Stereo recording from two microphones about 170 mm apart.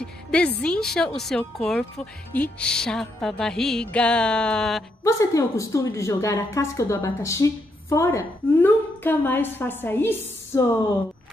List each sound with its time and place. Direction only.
0.0 s speech: 5° left (ahead or behind)
5.0 s a woman's voice: 20° left (ahead or behind)